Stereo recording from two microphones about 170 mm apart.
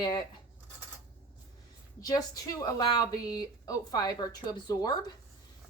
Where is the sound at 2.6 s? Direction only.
25° left (ahead or behind).